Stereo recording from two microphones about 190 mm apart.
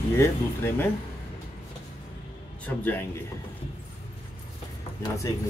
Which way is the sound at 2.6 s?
10° left (ahead or behind).